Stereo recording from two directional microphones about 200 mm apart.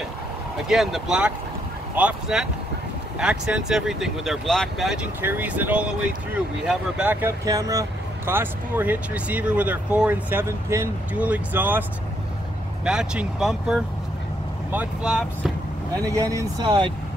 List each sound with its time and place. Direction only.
0.7 s speech: centre (ahead or behind)
12.8 s speech: 5° right (ahead or behind)
16.1 s speech: 15° right (ahead or behind)